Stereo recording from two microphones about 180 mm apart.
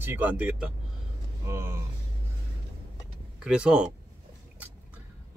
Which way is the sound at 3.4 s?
5° right (ahead or behind).